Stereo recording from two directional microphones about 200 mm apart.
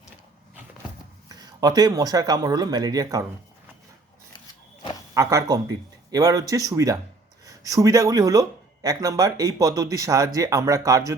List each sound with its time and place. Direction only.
1.3 s speech: 20° right (ahead or behind)
5.1 s speech: 15° right (ahead or behind)